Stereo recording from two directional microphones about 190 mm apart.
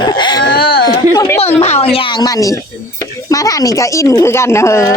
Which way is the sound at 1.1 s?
15° left (ahead or behind).